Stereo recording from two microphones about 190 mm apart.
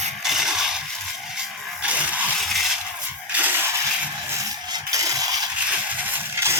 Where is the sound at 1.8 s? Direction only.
5° right (ahead or behind).